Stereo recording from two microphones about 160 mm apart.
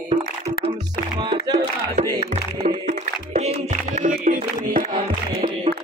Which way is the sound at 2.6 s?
45° right (ahead or behind).